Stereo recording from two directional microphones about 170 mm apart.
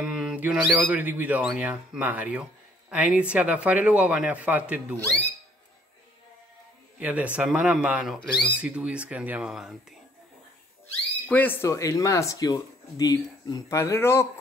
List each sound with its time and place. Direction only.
0.0 s speech: 5° right (ahead or behind)
7.0 s speech: 10° right (ahead or behind)
11.2 s speech: 10° left (ahead or behind)